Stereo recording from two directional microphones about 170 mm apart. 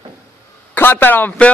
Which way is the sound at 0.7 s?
10° left (ahead or behind).